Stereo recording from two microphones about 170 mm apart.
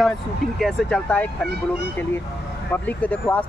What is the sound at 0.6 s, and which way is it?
Speech, 5° left (ahead or behind).